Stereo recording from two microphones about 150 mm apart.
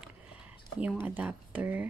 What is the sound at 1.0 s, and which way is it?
Speech, 10° right (ahead or behind).